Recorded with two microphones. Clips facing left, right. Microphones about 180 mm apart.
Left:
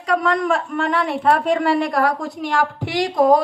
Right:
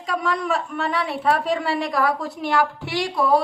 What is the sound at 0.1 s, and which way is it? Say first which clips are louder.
Speech: left 5 dB; 55° left (ahead or behind).